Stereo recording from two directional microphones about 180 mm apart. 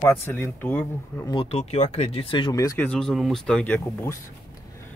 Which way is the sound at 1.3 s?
30° left (ahead or behind).